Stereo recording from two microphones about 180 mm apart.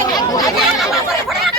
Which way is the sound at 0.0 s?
20° left (ahead or behind).